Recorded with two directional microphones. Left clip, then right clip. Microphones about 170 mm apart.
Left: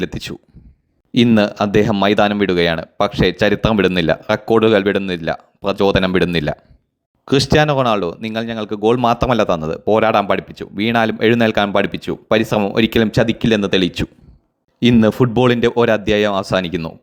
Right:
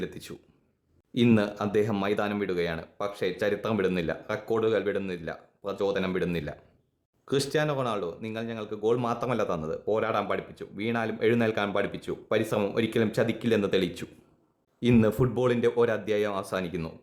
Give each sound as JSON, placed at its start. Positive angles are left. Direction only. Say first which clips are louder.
{"t": 0.0, "sound": "speech", "louder": "left 13 dB", "side_deg": 40}
{"t": 1.4, "sound": "speech", "louder": "left 12 dB", "side_deg": 40}